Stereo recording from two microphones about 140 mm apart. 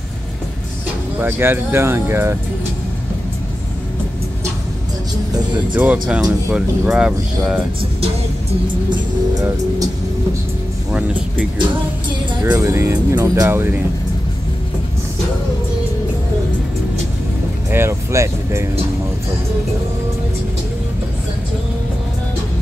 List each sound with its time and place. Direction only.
1.2 s speech: 15° right (ahead or behind)
5.8 s speech: 10° right (ahead or behind)
8.0 s music: 40° right (ahead or behind)
10.9 s speech: 10° right (ahead or behind)
12.5 s speech: 20° right (ahead or behind)
17.6 s speech: 20° right (ahead or behind)